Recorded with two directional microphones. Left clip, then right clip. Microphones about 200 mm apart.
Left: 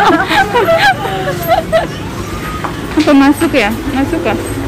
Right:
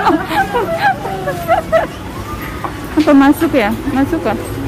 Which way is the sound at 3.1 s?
15° right (ahead or behind).